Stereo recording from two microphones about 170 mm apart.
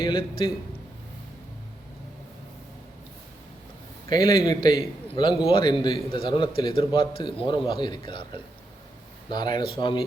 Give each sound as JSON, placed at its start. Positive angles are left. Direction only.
{"t": 0.0, "sound": "speech", "side_deg": 30}
{"t": 4.1, "sound": "speech", "side_deg": 25}